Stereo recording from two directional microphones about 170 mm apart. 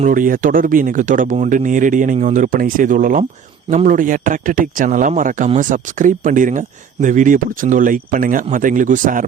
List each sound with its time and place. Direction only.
0.0 s speech: 55° right (ahead or behind)